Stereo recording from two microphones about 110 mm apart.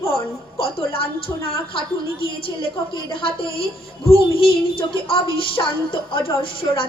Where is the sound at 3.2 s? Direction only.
55° left (ahead or behind).